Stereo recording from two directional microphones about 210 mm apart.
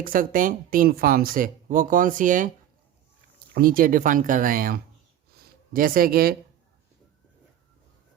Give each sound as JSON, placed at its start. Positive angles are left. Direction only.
{"t": 0.0, "sound": "speech", "side_deg": -40}
{"t": 3.5, "sound": "speech", "side_deg": -45}